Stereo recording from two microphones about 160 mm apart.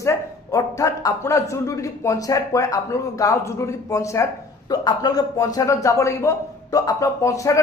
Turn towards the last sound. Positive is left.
turn(degrees=20)  # may be behind; listen again after turning